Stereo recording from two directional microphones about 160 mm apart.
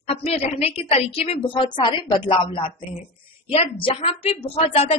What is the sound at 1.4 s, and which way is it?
Speech, 30° left (ahead or behind).